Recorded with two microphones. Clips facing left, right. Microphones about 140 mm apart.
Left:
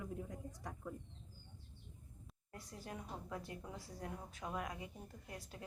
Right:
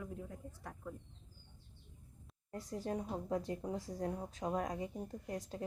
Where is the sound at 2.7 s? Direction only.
35° right (ahead or behind).